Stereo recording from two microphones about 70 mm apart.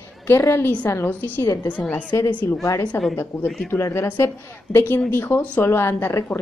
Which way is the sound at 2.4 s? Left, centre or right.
Left.